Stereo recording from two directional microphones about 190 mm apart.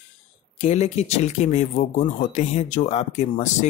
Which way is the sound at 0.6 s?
35° left (ahead or behind).